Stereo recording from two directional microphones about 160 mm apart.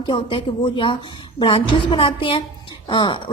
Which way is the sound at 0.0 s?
30° left (ahead or behind).